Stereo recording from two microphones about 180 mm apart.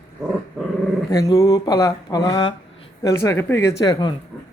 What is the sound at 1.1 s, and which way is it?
Speech, 20° left (ahead or behind).